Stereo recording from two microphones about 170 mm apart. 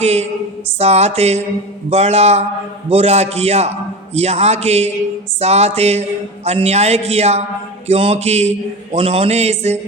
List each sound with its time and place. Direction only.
0.0 s a man's voice: 40° right (ahead or behind)